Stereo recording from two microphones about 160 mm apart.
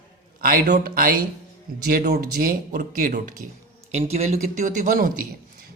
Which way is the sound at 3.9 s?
40° right (ahead or behind).